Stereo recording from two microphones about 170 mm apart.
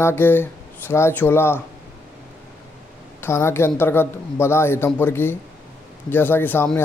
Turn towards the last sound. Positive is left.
turn(degrees=10)  # may be behind; listen again after turning